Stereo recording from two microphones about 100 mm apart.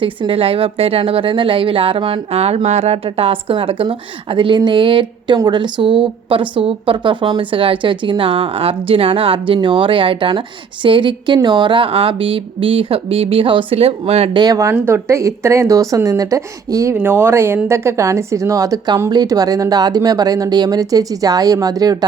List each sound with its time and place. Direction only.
0.0 s speech: 65° right (ahead or behind); by 14.3 s 85° right
14.3 s speech: 40° right (ahead or behind)
14.7 s a woman's voice: 25° right (ahead or behind)
16.9 s a woman's voice: 20° right (ahead or behind); by 21.9 s 40° right (ahead or behind)